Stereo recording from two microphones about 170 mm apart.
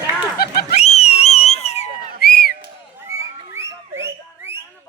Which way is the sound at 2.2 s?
60° left (ahead or behind).